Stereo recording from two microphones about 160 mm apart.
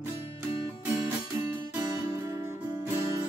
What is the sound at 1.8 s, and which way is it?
Music, 20° right (ahead or behind).